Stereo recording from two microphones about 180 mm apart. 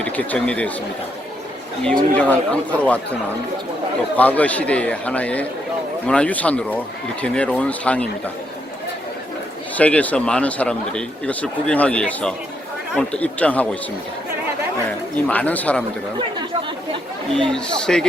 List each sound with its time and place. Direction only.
0.0 s speech: 10° left (ahead or behind)
1.8 s speech: 5° left (ahead or behind)
4.2 s speech: 10° left (ahead or behind)
9.7 s speech: 10° left (ahead or behind)
15.3 s speech: 10° left (ahead or behind)
17.5 s speech: 5° left (ahead or behind)